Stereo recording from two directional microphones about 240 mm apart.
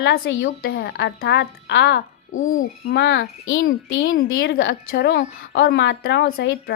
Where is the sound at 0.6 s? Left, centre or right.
Left.